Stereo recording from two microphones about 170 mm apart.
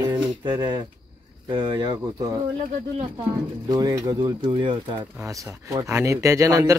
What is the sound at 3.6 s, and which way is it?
Speech, 20° right (ahead or behind).